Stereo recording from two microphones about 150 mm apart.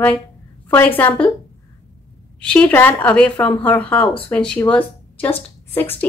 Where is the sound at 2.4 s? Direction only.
10° left (ahead or behind).